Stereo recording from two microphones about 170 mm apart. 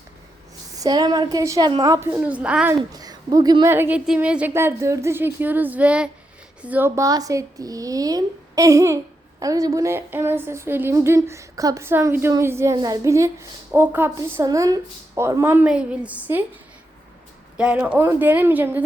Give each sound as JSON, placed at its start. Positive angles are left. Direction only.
{"t": 0.8, "sound": "speech", "side_deg": -25}
{"t": 2.9, "sound": "speech", "side_deg": -20}
{"t": 17.6, "sound": "speech", "side_deg": -5}